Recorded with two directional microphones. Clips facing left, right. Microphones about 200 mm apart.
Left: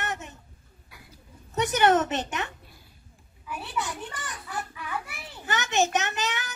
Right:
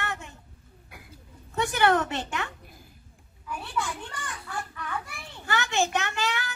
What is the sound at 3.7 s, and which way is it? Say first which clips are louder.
Speech: right 1 dB; 20° left (ahead or behind).